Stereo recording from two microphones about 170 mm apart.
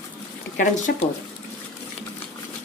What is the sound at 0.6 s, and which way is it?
Speech, 50° left (ahead or behind).